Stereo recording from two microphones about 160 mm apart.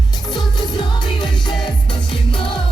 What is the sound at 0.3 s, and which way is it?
Music, 25° left (ahead or behind).